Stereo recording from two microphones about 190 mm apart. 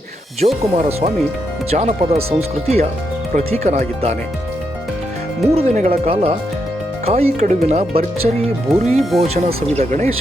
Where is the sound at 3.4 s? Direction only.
35° right (ahead or behind).